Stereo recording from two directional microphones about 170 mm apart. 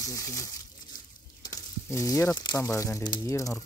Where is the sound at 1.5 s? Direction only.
15° left (ahead or behind).